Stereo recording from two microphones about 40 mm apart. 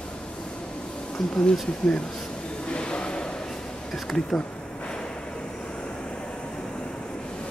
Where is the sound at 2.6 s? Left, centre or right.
Left.